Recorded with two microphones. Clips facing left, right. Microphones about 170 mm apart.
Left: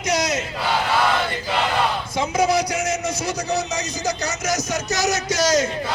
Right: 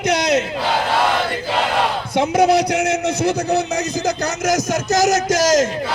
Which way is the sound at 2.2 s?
60° right (ahead or behind).